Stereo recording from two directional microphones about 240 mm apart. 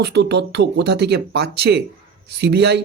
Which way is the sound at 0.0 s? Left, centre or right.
Right.